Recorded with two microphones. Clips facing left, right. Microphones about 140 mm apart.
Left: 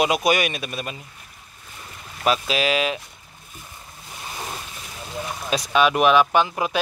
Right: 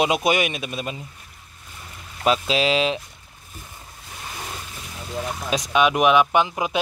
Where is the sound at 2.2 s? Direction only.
25° right (ahead or behind).